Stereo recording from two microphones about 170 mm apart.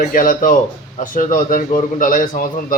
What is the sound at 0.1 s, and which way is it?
A man's voice, 55° left (ahead or behind).